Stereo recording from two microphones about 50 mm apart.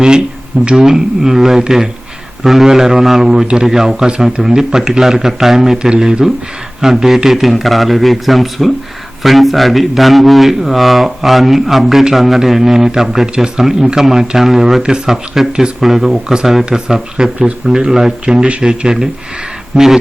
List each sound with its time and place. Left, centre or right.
0.8 s a man's voice: centre